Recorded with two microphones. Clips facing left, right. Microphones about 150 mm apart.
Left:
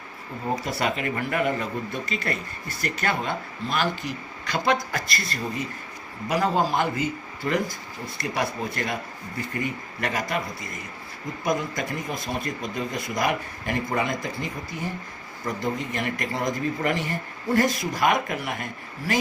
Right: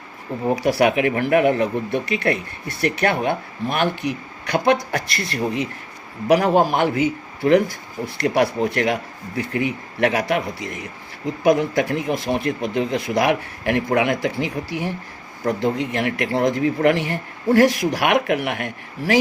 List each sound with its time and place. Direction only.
0.5 s speech: 70° right (ahead or behind)